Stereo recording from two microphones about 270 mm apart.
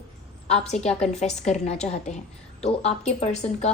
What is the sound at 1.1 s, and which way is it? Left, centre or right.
A woman's voice, left.